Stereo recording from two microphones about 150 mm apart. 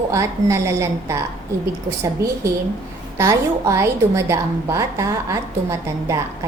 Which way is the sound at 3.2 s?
20° right (ahead or behind).